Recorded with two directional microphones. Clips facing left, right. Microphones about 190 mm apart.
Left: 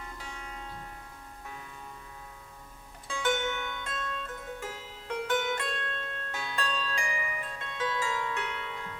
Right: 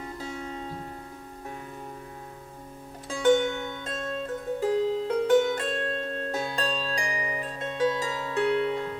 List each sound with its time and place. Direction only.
0.0 s music: 35° right (ahead or behind)
3.1 s music: 35° right (ahead or behind)